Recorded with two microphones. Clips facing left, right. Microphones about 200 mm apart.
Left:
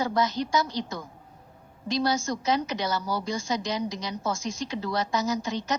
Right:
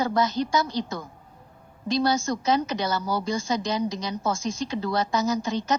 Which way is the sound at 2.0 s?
60° right (ahead or behind).